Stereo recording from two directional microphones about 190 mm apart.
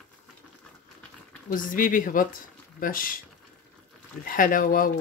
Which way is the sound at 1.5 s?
45° left (ahead or behind).